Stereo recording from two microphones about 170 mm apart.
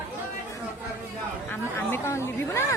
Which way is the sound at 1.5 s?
15° left (ahead or behind).